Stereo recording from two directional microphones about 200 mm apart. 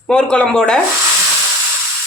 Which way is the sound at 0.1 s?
5° left (ahead or behind).